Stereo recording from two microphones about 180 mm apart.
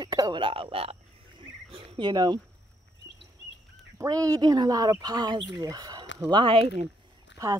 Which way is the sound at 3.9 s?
20° right (ahead or behind).